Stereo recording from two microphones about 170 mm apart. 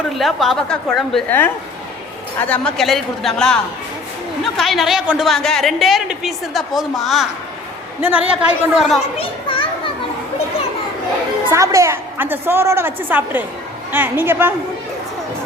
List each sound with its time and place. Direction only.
0.1 s a woman's voice: centre (ahead or behind)
9.1 s a child's voice: 30° left (ahead or behind)
11.4 s a woman's voice: 15° right (ahead or behind)